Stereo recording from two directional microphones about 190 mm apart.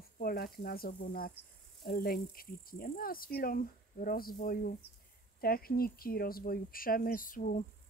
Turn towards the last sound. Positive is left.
turn(degrees=45)  # may be behind; listen again after turning